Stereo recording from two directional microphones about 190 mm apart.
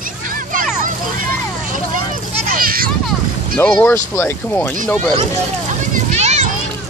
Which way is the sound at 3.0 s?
5° left (ahead or behind).